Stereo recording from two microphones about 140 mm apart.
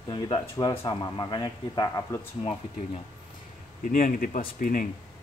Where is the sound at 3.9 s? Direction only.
75° left (ahead or behind).